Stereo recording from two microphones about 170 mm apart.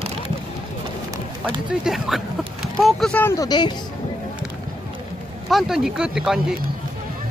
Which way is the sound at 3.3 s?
25° left (ahead or behind).